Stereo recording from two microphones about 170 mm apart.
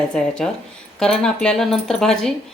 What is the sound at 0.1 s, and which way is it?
Speech, 5° left (ahead or behind).